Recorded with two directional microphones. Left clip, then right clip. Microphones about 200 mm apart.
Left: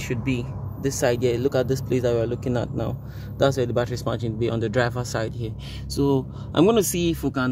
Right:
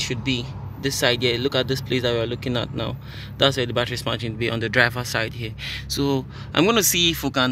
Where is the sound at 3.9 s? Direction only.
5° left (ahead or behind).